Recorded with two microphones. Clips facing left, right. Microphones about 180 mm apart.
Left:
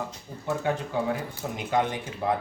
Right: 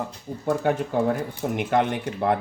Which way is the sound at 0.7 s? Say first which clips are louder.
Right 4 dB; 55° right (ahead or behind).